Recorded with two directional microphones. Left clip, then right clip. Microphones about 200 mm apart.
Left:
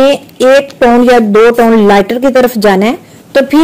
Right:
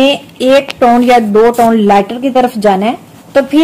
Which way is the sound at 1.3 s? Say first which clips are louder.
Left 2 dB; 25° left (ahead or behind).